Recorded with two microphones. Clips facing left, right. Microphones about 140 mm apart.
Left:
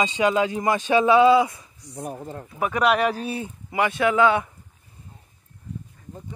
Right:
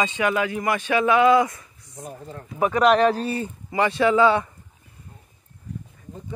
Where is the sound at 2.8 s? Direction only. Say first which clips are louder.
Right 3 dB; 10° left (ahead or behind).